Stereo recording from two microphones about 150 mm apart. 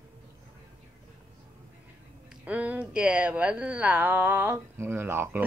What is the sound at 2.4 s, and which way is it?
A woman's voice, 10° right (ahead or behind).